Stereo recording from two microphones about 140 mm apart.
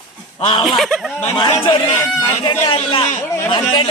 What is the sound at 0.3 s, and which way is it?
Speech, 40° left (ahead or behind).